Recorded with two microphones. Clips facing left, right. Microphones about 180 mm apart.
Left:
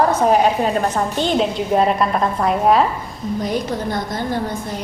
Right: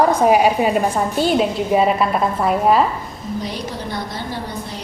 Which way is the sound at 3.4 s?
50° left (ahead or behind).